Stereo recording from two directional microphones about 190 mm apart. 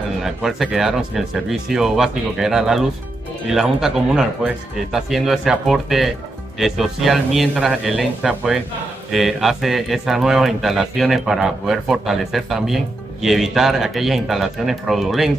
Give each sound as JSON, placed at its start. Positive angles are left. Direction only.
{"t": 0.2, "sound": "a man's voice", "side_deg": 0}